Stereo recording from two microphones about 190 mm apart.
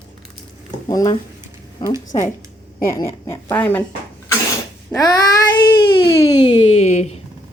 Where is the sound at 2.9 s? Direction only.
15° left (ahead or behind).